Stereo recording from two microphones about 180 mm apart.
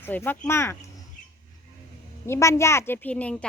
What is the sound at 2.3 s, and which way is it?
A child's voice, 15° left (ahead or behind).